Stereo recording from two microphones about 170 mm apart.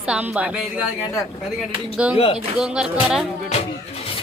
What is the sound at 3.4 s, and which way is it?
Vehicle, 40° left (ahead or behind).